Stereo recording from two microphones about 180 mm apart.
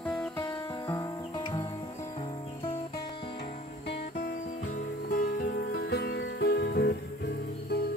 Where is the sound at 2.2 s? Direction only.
30° left (ahead or behind).